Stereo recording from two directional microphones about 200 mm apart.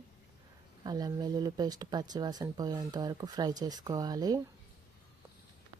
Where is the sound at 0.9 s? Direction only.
20° right (ahead or behind).